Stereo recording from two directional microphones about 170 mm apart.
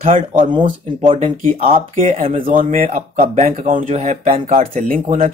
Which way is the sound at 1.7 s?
45° right (ahead or behind).